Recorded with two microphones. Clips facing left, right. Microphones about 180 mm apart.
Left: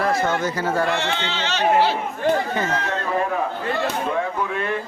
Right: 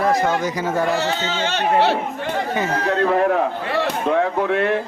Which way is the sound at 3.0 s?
65° right (ahead or behind).